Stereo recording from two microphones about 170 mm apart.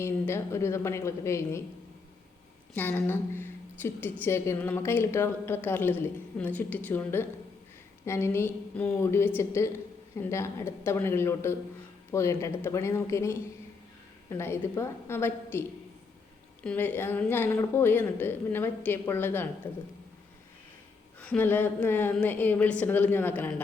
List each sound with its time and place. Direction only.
0.0 s a woman's voice: 15° left (ahead or behind)
2.7 s a woman's voice: 10° left (ahead or behind)
16.6 s a woman's voice: 10° left (ahead or behind)
21.2 s a woman's voice: 10° left (ahead or behind)